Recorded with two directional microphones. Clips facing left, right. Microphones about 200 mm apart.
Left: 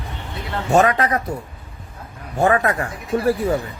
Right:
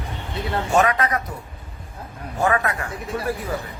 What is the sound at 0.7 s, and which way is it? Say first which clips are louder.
Speech: left 4 dB; 30° left (ahead or behind).